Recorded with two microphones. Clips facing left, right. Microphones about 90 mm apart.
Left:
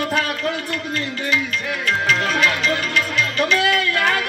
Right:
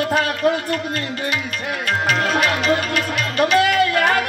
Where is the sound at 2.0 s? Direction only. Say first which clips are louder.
Right 1 dB; 35° right (ahead or behind).